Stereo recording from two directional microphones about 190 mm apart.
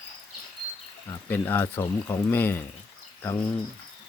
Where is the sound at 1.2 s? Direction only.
10° left (ahead or behind).